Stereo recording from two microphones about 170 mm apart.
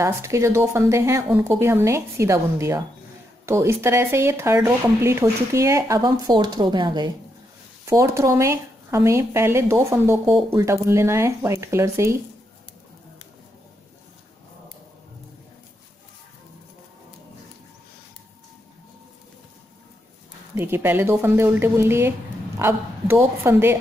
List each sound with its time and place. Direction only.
0.0 s speech: 15° right (ahead or behind)
20.5 s speech: 15° right (ahead or behind)